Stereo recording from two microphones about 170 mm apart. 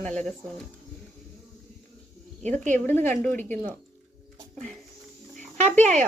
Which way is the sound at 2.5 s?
10° left (ahead or behind).